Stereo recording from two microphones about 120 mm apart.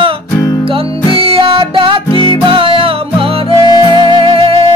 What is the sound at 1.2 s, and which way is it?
Music, 50° right (ahead or behind).